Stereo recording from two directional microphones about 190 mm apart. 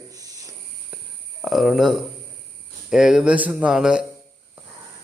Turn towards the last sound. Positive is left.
turn(degrees=-5)  # may be behind; listen again after turning